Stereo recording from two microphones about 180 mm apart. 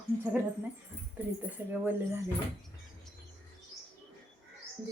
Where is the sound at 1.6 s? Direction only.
10° right (ahead or behind).